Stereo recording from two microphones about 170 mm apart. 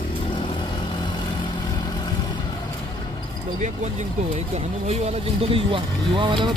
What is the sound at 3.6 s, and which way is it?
Speech, 40° right (ahead or behind).